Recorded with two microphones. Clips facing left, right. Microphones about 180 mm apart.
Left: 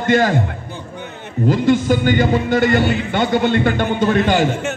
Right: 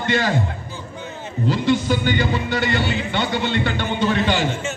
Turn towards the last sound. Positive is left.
turn(degrees=50)  # may be behind; listen again after turning